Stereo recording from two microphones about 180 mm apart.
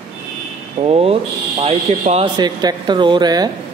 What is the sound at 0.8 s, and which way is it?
Speech, 35° right (ahead or behind).